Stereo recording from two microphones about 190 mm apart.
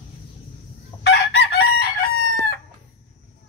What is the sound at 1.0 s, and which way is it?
Chicken, 60° left (ahead or behind).